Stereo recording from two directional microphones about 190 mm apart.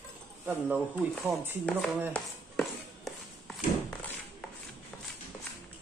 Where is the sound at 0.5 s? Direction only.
5° right (ahead or behind).